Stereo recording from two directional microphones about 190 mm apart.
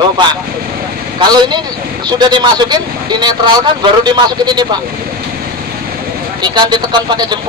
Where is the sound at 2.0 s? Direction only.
25° right (ahead or behind).